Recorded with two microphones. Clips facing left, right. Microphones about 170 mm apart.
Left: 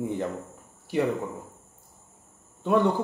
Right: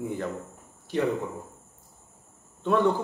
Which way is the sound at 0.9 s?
10° left (ahead or behind).